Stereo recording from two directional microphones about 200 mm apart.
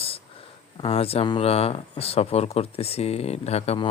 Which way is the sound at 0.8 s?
30° left (ahead or behind).